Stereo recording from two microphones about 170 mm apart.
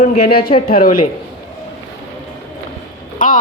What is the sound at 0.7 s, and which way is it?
Speech, 55° left (ahead or behind).